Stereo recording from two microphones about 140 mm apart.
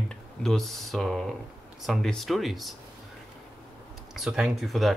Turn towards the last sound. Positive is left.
turn(degrees=0)  # may be behind; listen again after turning